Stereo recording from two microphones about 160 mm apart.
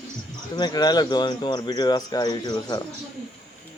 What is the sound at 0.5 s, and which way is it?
Speech, 25° left (ahead or behind).